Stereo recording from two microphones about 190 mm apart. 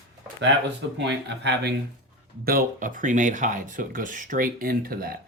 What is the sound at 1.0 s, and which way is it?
Speech, 65° right (ahead or behind).